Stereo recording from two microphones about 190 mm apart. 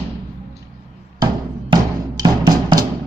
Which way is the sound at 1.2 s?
20° right (ahead or behind).